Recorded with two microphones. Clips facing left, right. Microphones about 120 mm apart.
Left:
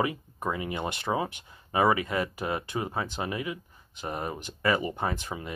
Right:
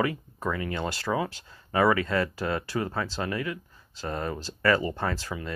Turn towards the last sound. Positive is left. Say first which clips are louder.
# right 1 dB
turn(degrees=20)  # may be behind; listen again after turning